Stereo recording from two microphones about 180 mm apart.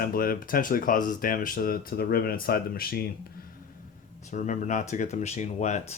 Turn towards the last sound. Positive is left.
turn(degrees=40)  # may be behind; listen again after turning